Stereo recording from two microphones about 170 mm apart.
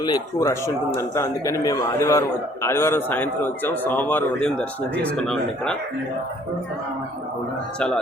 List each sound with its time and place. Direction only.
0.0 s a man's voice: 20° left (ahead or behind); by 5.7 s 5° left (ahead or behind)